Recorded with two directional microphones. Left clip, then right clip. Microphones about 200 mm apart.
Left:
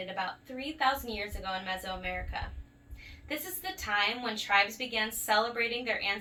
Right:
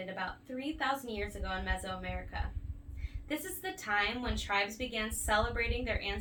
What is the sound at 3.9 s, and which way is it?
A woman's voice, 15° right (ahead or behind).